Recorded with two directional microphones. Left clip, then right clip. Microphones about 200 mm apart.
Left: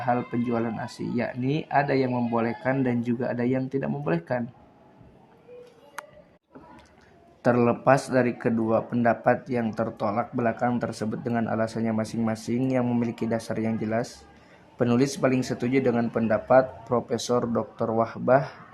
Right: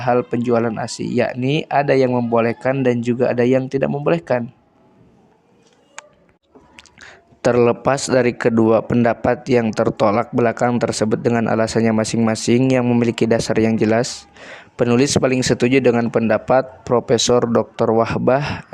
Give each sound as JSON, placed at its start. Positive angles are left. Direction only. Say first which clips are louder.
{"t": 0.0, "sound": "speech", "louder": "right 9 dB", "side_deg": -35}
{"t": 6.7, "sound": "speech", "louder": "right 11 dB", "side_deg": -45}